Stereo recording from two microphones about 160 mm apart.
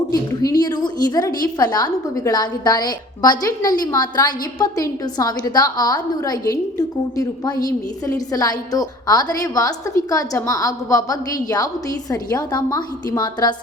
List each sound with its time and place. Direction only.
0.1 s a woman's voice: 25° left (ahead or behind)